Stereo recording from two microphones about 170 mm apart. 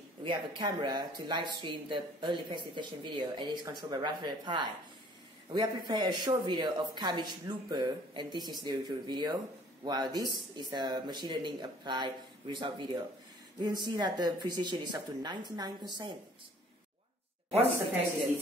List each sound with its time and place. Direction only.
0.6 s speech: 25° right (ahead or behind)